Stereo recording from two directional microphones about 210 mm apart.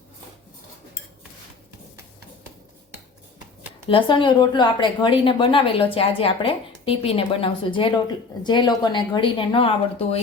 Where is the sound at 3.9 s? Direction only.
25° left (ahead or behind).